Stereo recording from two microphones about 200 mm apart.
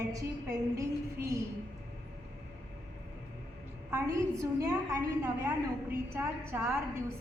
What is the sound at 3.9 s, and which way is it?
A woman's voice, 15° right (ahead or behind).